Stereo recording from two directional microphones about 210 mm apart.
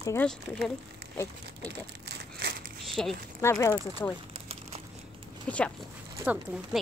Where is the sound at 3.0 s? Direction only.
5° left (ahead or behind).